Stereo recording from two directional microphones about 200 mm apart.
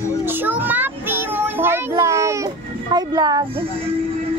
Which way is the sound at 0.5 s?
10° right (ahead or behind).